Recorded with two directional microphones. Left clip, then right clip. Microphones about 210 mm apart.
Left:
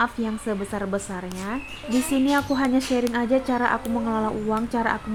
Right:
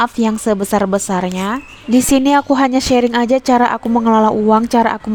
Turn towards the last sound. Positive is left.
turn(degrees=-45)  # may be behind; listen again after turning